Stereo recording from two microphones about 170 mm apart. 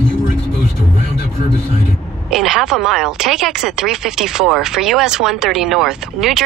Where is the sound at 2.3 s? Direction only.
Centre (ahead or behind).